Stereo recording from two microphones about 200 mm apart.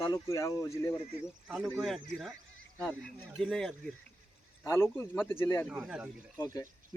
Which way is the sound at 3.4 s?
Centre (ahead or behind).